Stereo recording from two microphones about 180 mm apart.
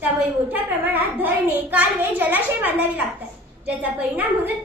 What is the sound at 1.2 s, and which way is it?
A woman's voice, 10° right (ahead or behind).